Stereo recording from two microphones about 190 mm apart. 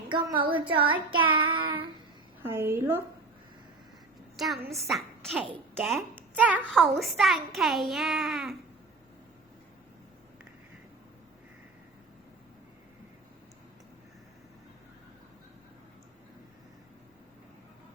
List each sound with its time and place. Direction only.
0.1 s child singing: 25° right (ahead or behind)
2.4 s a woman's voice: 15° right (ahead or behind)
4.4 s a woman's voice: centre (ahead or behind)